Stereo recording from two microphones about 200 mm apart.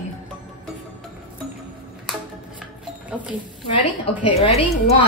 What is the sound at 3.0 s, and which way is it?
Speech, 5° right (ahead or behind).